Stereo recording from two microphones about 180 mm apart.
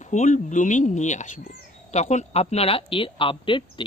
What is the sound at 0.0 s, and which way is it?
Speech, 40° left (ahead or behind).